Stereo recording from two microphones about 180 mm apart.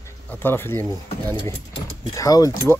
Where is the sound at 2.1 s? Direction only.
20° left (ahead or behind).